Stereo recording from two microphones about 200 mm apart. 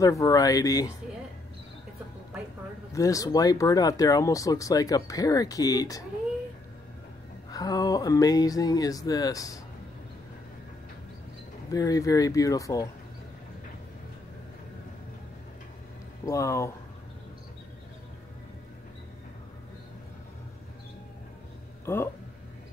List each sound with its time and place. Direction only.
0.0 s speech: 15° left (ahead or behind)
2.9 s speech: 15° left (ahead or behind)
7.5 s speech: 20° left (ahead or behind)
11.7 s speech: 15° left (ahead or behind)
16.3 s speech: 15° left (ahead or behind)
21.8 s speech: 10° left (ahead or behind)